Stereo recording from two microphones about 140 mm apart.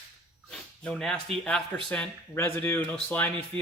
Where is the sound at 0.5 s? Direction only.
5° left (ahead or behind).